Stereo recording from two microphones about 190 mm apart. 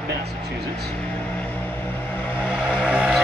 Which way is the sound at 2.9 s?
5° right (ahead or behind).